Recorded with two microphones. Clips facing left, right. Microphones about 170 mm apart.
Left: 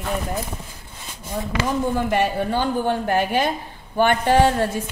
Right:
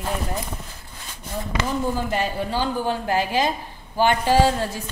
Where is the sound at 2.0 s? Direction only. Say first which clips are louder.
Left 4 dB; 60° left (ahead or behind).